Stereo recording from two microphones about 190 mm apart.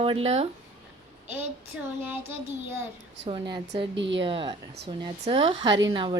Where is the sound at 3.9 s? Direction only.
70° right (ahead or behind).